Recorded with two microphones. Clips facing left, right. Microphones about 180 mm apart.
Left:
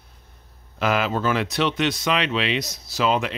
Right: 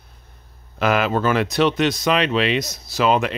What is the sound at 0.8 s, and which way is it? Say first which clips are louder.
Speech: right 3 dB; 60° right (ahead or behind).